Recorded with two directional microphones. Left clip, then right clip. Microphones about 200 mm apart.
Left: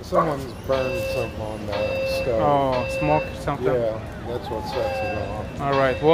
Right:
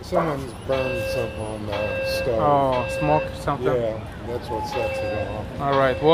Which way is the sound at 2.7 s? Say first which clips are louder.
Even; 25° right (ahead or behind).